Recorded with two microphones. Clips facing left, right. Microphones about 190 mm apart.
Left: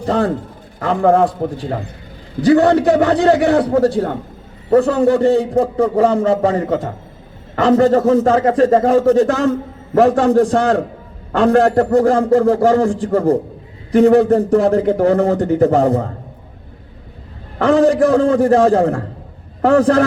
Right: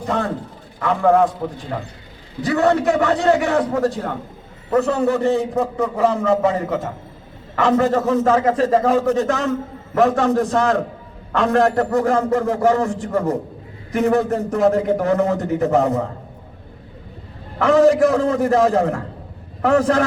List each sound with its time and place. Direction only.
0.0 s a man's voice: 35° left (ahead or behind)
17.6 s a man's voice: 35° left (ahead or behind)